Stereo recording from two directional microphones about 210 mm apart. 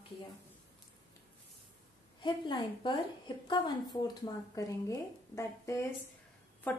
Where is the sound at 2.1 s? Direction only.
20° left (ahead or behind).